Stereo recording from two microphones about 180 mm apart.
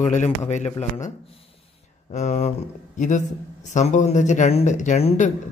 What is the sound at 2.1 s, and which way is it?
A man's voice, 40° left (ahead or behind).